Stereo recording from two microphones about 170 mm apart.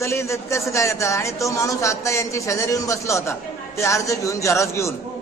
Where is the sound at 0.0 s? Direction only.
15° left (ahead or behind).